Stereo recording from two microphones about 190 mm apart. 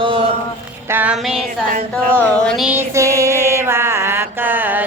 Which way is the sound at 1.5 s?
45° right (ahead or behind).